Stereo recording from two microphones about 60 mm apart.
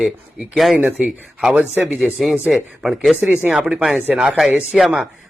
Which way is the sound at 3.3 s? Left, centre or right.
Right.